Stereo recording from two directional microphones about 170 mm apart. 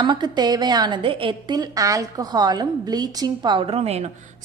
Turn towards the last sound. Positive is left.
turn(degrees=-40)  # may be behind; listen again after turning